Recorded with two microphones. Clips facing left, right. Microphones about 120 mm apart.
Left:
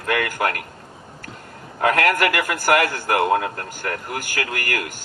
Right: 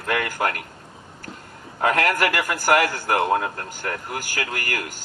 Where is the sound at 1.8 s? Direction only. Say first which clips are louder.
Left 2 dB; 25° right (ahead or behind).